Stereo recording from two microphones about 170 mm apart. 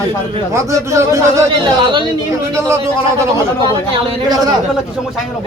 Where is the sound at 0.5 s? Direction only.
15° right (ahead or behind).